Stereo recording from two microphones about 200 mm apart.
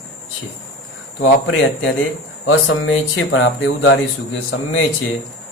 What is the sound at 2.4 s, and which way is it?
Speech, 80° left.